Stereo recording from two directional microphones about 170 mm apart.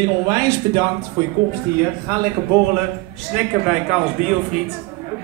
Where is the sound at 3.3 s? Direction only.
5° right (ahead or behind).